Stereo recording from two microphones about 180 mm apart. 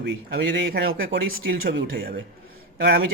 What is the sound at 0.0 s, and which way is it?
Speech, 70° right (ahead or behind).